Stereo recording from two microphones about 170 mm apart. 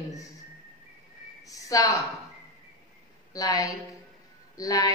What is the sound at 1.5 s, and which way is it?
Speech, 20° left (ahead or behind).